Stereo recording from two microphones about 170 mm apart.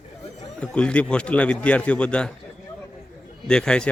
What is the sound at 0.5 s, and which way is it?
A man's voice, 5° left (ahead or behind).